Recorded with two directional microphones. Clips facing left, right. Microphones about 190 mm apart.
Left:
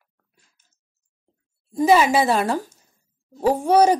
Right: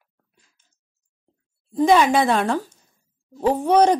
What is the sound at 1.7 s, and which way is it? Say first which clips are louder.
Speech: even; 5° left (ahead or behind).